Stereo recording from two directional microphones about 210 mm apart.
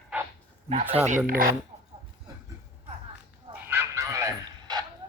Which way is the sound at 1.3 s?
40° right (ahead or behind).